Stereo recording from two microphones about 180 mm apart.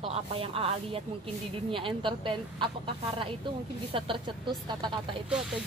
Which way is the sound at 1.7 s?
30° right (ahead or behind).